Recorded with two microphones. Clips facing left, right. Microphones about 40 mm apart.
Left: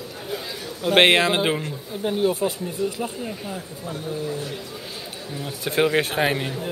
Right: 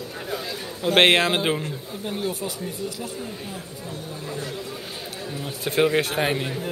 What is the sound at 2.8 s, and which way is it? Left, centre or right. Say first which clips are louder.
Speech: left 8 dB; left.